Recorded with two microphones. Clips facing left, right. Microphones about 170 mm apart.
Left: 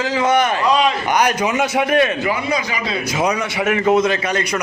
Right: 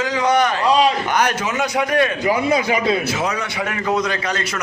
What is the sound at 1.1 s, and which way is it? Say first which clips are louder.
A man's voice: left 3 dB; 10° left (ahead or behind).